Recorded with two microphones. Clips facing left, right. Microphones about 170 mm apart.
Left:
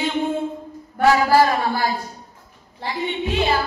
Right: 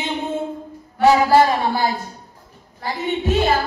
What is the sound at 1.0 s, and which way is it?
Speech, 20° right (ahead or behind).